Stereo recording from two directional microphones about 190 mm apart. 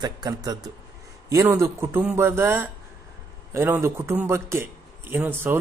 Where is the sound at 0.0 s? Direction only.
20° right (ahead or behind).